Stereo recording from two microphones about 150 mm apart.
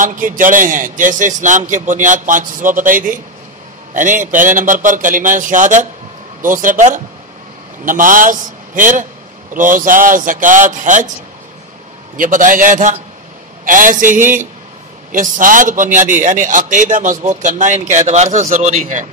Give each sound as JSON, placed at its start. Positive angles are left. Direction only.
{"t": 0.0, "sound": "a man's voice", "side_deg": -60}
{"t": 12.2, "sound": "a man's voice", "side_deg": -60}